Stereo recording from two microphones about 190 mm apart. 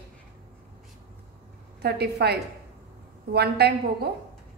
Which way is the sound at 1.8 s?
60° right (ahead or behind).